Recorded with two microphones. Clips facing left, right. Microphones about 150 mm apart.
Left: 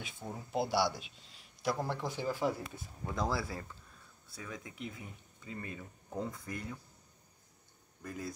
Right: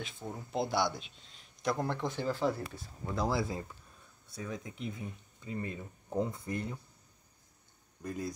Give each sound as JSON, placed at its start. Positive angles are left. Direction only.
{"t": 0.0, "sound": "speech", "side_deg": 10}
{"t": 3.2, "sound": "speech", "side_deg": -15}
{"t": 8.0, "sound": "speech", "side_deg": -20}